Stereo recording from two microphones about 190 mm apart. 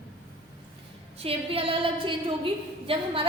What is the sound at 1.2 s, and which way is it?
A woman's voice, 30° right (ahead or behind).